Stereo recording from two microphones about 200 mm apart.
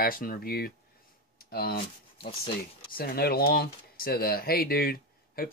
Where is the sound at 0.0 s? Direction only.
45° left (ahead or behind).